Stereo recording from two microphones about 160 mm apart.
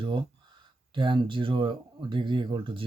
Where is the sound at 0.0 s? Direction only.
30° right (ahead or behind).